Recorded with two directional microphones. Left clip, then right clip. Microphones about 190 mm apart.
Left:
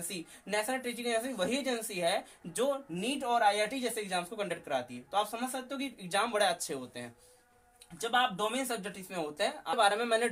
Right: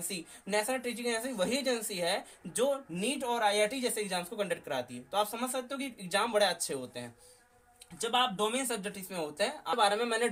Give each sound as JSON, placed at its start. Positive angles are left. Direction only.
{"t": 0.1, "sound": "speech", "side_deg": 15}